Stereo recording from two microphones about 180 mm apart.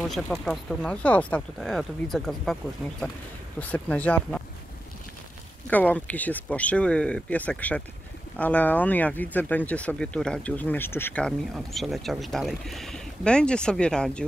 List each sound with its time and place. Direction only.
0.0 s speech: centre (ahead or behind)
5.7 s speech: 10° left (ahead or behind)